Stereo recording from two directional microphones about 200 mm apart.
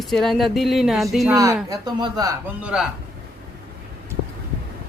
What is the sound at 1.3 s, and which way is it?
Speech, 15° right (ahead or behind).